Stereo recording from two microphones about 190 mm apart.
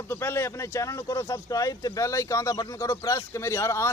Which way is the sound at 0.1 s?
15° left (ahead or behind).